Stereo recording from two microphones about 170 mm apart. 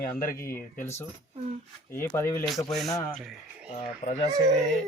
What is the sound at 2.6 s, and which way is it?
Speech, centre (ahead or behind).